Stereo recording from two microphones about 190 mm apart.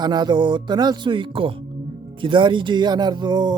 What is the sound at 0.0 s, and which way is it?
Speech, 20° right (ahead or behind).